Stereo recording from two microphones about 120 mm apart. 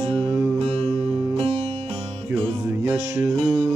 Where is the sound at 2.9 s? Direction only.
20° right (ahead or behind).